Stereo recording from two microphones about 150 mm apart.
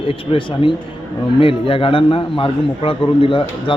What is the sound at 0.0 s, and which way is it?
A man's voice, 40° left (ahead or behind).